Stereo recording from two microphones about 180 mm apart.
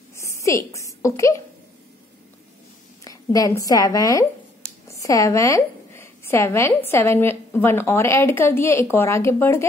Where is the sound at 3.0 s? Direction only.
20° left (ahead or behind).